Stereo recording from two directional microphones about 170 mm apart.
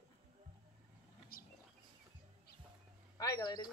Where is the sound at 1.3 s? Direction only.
60° left (ahead or behind).